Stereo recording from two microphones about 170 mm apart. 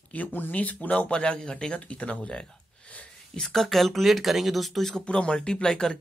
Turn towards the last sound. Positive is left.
turn(degrees=5)  # may be behind; listen again after turning